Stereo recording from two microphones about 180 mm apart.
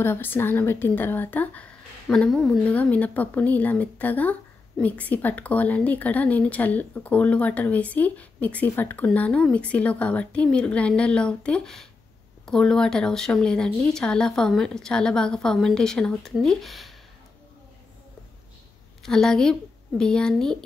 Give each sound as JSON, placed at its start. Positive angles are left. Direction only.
{"t": 0.0, "sound": "speech", "side_deg": 10}
{"t": 19.0, "sound": "speech", "side_deg": 5}